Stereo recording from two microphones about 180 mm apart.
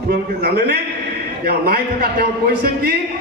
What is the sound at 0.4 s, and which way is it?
A man's voice, 60° right (ahead or behind).